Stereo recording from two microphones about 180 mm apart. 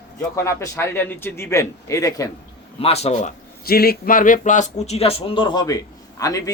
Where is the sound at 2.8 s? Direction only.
35° left (ahead or behind).